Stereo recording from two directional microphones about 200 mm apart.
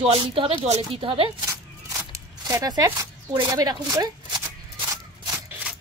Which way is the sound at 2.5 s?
20° right (ahead or behind).